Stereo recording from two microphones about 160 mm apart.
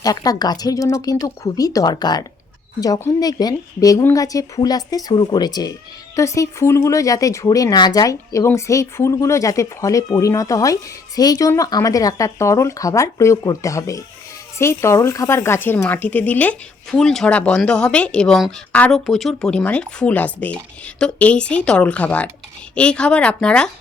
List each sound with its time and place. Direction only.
0.0 s speech: 25° left (ahead or behind); by 23.7 s 5° left (ahead or behind)